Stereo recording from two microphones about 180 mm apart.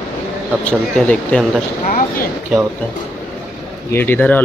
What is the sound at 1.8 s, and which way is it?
Speech, 50° left (ahead or behind).